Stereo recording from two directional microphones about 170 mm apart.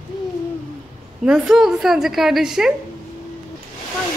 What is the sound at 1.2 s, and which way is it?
Speech, 5° right (ahead or behind).